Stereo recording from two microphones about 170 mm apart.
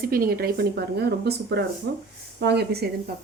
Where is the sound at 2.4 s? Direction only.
75° right (ahead or behind).